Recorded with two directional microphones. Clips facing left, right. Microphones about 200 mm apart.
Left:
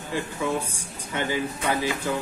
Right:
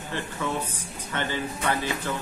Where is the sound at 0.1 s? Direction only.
10° left (ahead or behind).